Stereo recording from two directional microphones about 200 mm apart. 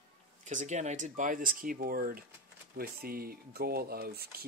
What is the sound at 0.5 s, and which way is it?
Speech, 35° right (ahead or behind).